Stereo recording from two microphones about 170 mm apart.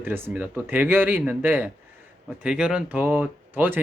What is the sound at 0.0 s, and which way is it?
Speech, 10° right (ahead or behind).